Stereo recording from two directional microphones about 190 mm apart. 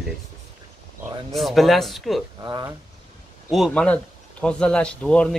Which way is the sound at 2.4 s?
20° right (ahead or behind).